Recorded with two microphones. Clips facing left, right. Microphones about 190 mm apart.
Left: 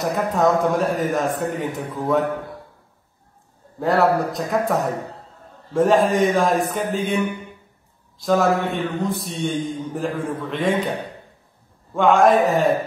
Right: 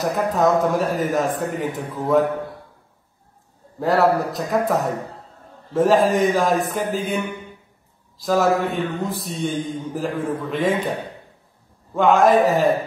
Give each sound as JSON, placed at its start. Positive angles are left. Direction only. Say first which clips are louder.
{"t": 0.0, "sound": "a man's voice", "louder": "even", "side_deg": 0}
{"t": 3.8, "sound": "a man's voice", "louder": "even", "side_deg": 0}
{"t": 11.9, "sound": "a man's voice", "louder": "even", "side_deg": 0}